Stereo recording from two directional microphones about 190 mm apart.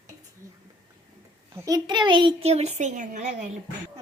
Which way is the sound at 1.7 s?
20° right (ahead or behind).